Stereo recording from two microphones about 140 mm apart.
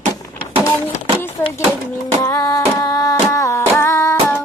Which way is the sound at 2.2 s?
20° left (ahead or behind).